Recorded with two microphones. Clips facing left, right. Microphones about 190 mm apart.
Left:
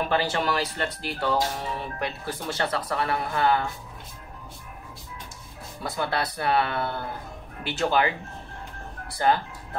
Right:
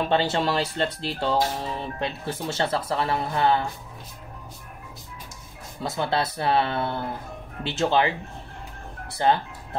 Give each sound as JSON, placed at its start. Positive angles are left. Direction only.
{"t": 0.0, "sound": "speech", "side_deg": -25}
{"t": 5.8, "sound": "speech", "side_deg": -25}